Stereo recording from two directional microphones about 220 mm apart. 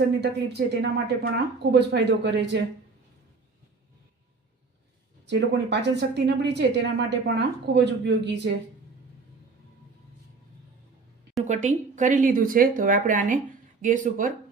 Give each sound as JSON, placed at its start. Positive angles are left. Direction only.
{"t": 0.2, "sound": "speech", "side_deg": -50}
{"t": 5.2, "sound": "speech", "side_deg": -50}
{"t": 11.4, "sound": "speech", "side_deg": -35}